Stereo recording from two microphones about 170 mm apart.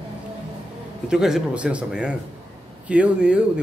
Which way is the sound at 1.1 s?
5° right (ahead or behind).